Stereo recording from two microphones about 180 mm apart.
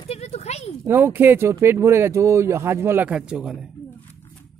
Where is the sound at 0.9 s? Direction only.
15° right (ahead or behind).